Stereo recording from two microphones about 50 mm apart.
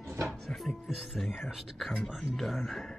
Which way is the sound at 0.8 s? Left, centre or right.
Centre.